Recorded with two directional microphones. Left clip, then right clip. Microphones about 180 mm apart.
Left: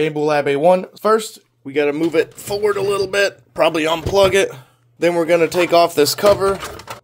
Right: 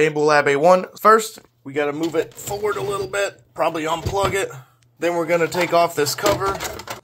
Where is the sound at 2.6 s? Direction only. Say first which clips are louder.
Left 6 dB; 80° left.